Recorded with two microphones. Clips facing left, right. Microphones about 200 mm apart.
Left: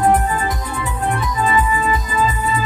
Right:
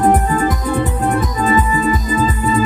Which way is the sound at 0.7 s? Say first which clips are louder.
Right 6 dB; 40° right (ahead or behind).